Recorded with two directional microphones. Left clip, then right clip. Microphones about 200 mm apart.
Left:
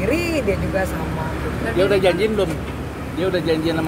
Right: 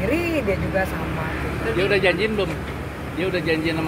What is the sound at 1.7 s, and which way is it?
Speech, 15° left (ahead or behind).